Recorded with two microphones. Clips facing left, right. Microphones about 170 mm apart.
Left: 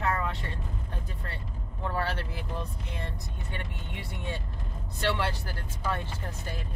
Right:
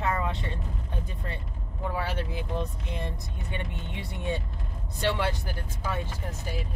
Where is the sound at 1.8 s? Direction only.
10° right (ahead or behind).